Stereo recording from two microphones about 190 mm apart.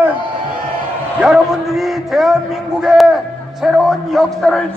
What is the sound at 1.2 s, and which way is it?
A man's voice, centre (ahead or behind).